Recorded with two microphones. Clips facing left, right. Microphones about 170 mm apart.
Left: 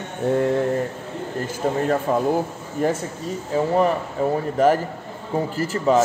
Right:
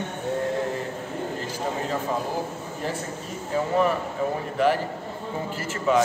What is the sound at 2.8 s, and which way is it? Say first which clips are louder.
Speech: left 9 dB; 50° left (ahead or behind).